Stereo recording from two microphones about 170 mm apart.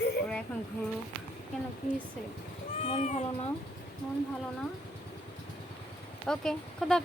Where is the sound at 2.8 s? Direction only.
40° left (ahead or behind).